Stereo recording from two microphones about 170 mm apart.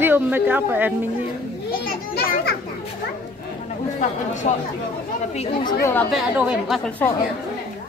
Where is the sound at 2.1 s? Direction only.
75° left (ahead or behind).